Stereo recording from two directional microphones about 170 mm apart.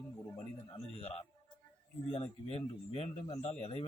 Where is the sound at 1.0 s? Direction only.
35° left (ahead or behind).